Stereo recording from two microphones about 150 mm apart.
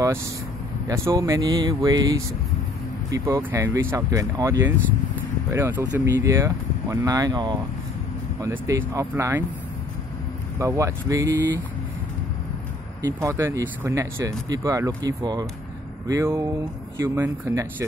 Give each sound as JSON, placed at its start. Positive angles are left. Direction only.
{"t": 0.8, "sound": "speech", "side_deg": -20}
{"t": 10.6, "sound": "speech", "side_deg": -20}
{"t": 13.0, "sound": "speech", "side_deg": -20}